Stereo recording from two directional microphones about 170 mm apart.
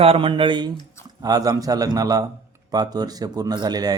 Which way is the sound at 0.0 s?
35° right (ahead or behind).